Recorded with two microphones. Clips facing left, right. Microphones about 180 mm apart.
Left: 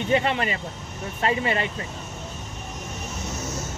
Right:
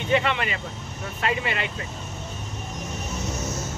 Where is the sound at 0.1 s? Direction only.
35° left (ahead or behind).